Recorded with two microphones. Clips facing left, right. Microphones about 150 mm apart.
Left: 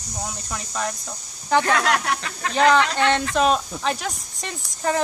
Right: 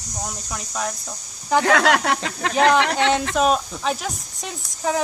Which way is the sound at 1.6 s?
75° right (ahead or behind).